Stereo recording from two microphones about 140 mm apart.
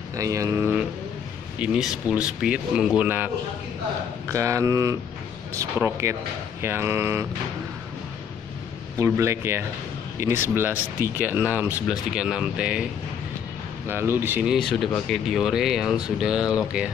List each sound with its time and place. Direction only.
0.1 s speech: 25° right (ahead or behind)
1.6 s speech: 5° right (ahead or behind)
4.3 s speech: 20° right (ahead or behind)
8.9 s speech: 20° right (ahead or behind)
13.8 s speech: 15° right (ahead or behind)